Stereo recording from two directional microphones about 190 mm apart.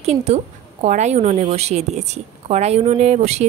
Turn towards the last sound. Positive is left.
turn(degrees=-35)  # may be behind; listen again after turning